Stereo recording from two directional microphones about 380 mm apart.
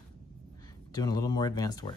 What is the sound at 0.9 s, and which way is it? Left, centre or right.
Speech, centre.